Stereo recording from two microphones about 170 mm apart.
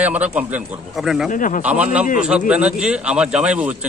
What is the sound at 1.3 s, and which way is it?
Speech, 50° left (ahead or behind).